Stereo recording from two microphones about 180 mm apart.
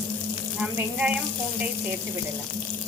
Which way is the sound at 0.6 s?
5° right (ahead or behind).